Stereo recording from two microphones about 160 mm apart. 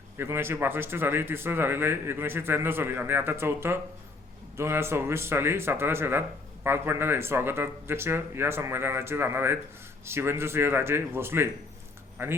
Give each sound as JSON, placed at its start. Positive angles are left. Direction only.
{"t": 0.2, "sound": "speech", "side_deg": -15}